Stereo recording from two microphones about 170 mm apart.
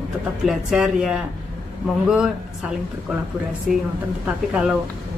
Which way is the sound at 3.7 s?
5° right (ahead or behind).